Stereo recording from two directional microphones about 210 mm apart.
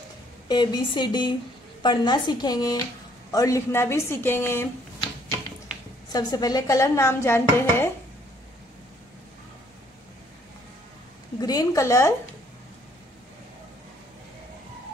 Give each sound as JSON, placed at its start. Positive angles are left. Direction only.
{"t": 0.5, "sound": "speech", "side_deg": 20}
{"t": 6.1, "sound": "speech", "side_deg": 15}
{"t": 11.4, "sound": "speech", "side_deg": 15}